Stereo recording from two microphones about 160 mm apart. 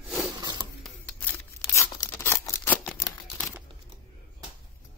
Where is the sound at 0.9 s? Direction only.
10° left (ahead or behind).